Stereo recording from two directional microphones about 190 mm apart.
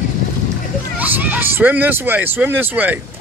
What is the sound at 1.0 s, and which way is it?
Speech, 10° right (ahead or behind).